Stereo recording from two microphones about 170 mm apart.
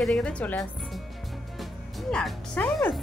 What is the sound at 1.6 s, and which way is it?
Music, centre (ahead or behind).